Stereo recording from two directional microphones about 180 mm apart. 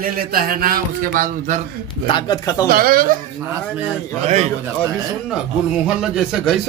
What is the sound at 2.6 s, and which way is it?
Speech, 55° right (ahead or behind).